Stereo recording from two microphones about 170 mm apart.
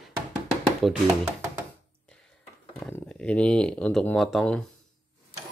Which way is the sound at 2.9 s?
5° left (ahead or behind).